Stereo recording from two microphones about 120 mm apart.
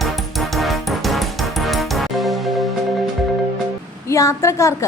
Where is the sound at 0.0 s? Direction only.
Centre (ahead or behind).